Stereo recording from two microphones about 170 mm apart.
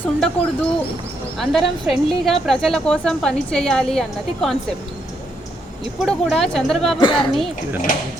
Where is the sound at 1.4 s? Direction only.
Centre (ahead or behind).